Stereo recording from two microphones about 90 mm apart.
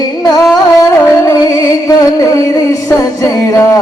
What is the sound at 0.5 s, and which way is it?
Music, 30° left (ahead or behind).